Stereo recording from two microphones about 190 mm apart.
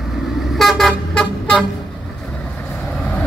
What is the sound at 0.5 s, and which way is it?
Vehicle, centre (ahead or behind).